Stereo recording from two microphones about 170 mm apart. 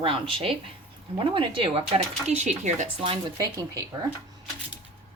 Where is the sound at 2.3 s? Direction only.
45° right (ahead or behind).